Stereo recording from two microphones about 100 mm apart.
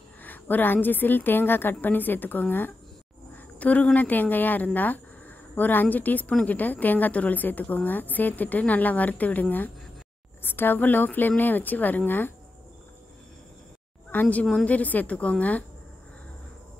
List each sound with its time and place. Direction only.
0.2 s a woman's voice: 20° left (ahead or behind)
14.2 s a woman's voice: 5° left (ahead or behind)